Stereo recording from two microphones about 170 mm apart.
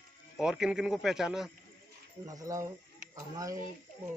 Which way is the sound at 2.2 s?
20° right (ahead or behind).